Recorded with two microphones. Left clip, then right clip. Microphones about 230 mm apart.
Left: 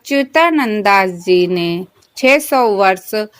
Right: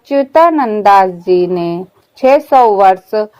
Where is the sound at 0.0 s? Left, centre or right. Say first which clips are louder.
Right 4 dB; left.